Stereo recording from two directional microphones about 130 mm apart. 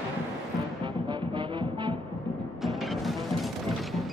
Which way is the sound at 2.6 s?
Centre (ahead or behind).